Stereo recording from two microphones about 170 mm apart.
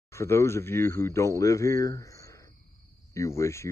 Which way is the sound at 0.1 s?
15° left (ahead or behind).